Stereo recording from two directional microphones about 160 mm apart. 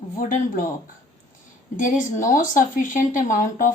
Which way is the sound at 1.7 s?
55° left (ahead or behind).